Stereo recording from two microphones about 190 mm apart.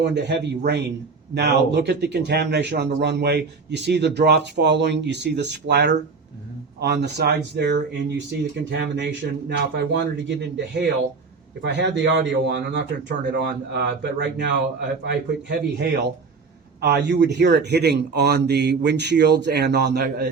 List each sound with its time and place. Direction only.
0.0 s a man's voice: 65° right (ahead or behind)
11.6 s a man's voice: 65° right (ahead or behind)